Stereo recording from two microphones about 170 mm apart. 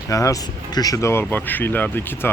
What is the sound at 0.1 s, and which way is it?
Speech, 20° left (ahead or behind).